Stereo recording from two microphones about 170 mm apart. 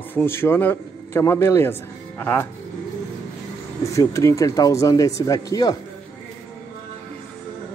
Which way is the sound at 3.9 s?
20° left (ahead or behind).